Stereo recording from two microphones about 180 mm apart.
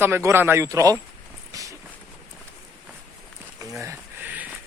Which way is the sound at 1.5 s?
20° right (ahead or behind).